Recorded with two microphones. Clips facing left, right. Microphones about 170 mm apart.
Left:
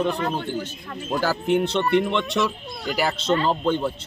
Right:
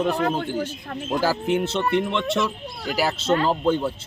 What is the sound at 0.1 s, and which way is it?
Speech, 50° right (ahead or behind).